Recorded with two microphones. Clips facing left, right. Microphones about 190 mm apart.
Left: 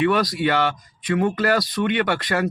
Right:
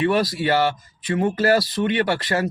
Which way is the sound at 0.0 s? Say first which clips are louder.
Even; 30° right (ahead or behind).